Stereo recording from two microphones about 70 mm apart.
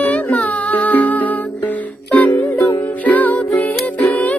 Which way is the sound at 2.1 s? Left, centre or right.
Left.